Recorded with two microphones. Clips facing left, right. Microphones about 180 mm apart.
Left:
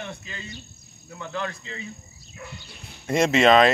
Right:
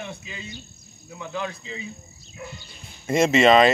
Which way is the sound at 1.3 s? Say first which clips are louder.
Right 1 dB; centre (ahead or behind).